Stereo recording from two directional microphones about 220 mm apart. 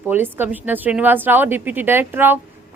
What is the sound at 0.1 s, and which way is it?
A woman's voice, 10° right (ahead or behind).